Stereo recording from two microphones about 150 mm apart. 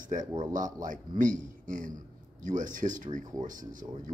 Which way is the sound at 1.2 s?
60° right (ahead or behind).